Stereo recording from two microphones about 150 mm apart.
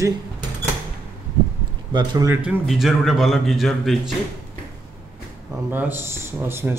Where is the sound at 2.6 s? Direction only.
Centre (ahead or behind).